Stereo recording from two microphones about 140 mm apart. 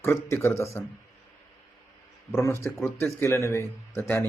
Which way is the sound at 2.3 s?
20° left (ahead or behind).